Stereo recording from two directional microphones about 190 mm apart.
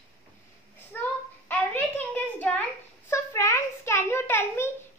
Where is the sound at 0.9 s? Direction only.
10° left (ahead or behind).